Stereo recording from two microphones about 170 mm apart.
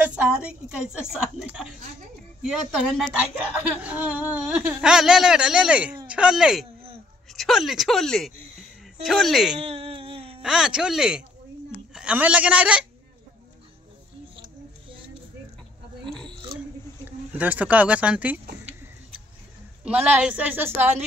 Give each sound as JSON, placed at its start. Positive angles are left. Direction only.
{"t": 0.0, "sound": "a sound", "side_deg": -10}
{"t": 2.4, "sound": "speech", "side_deg": -5}
{"t": 9.7, "sound": "a sound", "side_deg": -35}
{"t": 10.4, "sound": "a man's voice", "side_deg": -5}
{"t": 16.0, "sound": "oink", "side_deg": 5}
{"t": 17.4, "sound": "speech", "side_deg": -10}
{"t": 19.8, "sound": "speech", "side_deg": -5}